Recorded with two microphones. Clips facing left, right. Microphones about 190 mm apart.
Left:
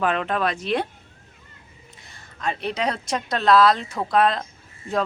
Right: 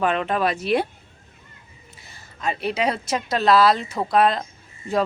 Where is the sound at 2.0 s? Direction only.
5° right (ahead or behind).